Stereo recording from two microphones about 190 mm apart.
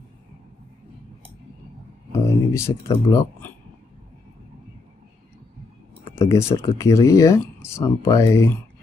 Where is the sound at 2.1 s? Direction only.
15° left (ahead or behind).